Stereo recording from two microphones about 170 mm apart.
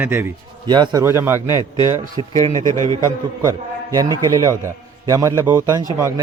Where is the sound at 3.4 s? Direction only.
20° right (ahead or behind).